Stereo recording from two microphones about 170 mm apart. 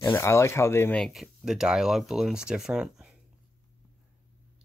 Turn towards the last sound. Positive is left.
turn(degrees=-5)  # may be behind; listen again after turning